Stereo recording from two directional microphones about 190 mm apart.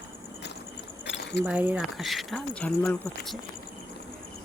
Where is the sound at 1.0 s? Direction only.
65° left (ahead or behind).